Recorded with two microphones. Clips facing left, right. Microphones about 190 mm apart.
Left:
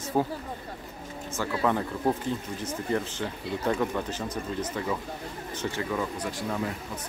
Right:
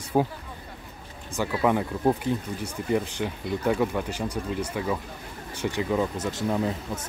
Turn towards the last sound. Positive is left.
turn(degrees=-25)  # may be behind; listen again after turning